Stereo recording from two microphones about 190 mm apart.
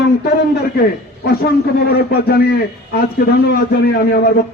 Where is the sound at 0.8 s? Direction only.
60° left (ahead or behind).